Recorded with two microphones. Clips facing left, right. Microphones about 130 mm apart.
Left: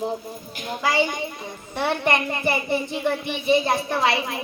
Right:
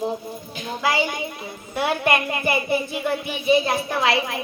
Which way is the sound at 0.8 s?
5° right (ahead or behind).